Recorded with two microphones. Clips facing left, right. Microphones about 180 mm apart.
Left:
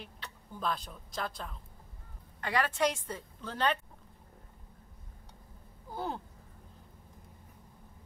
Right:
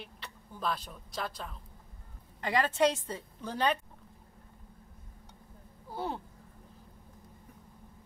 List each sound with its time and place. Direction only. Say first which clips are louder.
0.0 s a woman's voice: right 1 dB; centre (ahead or behind)
2.4 s speech: right 3 dB; 20° right (ahead or behind)
5.9 s a sound: right 1 dB; centre (ahead or behind)